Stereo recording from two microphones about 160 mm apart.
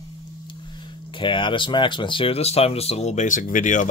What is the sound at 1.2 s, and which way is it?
Speech, 30° left (ahead or behind).